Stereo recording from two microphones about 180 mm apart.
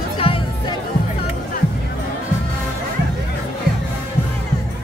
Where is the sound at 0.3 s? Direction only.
30° left (ahead or behind).